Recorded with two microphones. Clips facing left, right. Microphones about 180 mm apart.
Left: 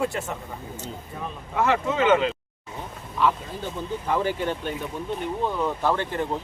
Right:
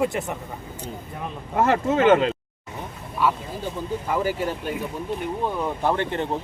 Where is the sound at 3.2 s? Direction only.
10° right (ahead or behind).